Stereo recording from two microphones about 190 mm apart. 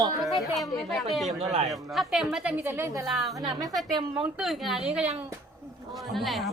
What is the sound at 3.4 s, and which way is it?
Speech, 20° right (ahead or behind).